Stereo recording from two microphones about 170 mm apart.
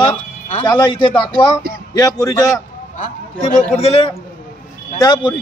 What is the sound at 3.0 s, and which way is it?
A man's voice, 40° left (ahead or behind).